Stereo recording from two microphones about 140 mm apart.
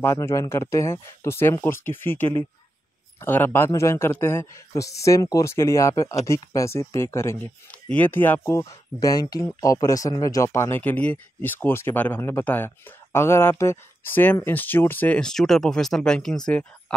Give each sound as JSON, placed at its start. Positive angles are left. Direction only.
{"t": 0.0, "sound": "speech", "side_deg": 20}